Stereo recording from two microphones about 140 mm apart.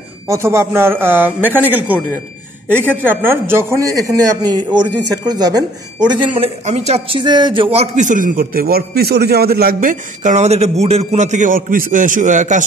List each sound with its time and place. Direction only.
0.3 s a man's voice: 20° right (ahead or behind)
6.3 s a man's voice: 45° right (ahead or behind)